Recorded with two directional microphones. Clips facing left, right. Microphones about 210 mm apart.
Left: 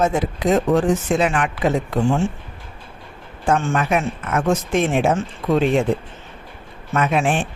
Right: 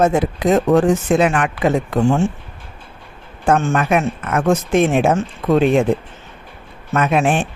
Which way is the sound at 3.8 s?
55° right (ahead or behind).